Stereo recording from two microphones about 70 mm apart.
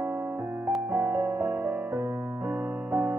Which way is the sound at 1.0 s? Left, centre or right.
Right.